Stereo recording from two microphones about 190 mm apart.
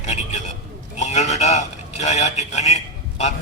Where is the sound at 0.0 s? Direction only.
35° left (ahead or behind).